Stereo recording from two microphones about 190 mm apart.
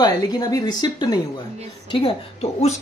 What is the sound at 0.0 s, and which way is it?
A woman's voice, 20° left (ahead or behind).